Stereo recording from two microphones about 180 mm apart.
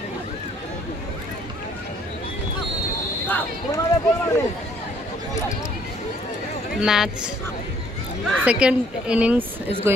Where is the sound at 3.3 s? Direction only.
10° left (ahead or behind).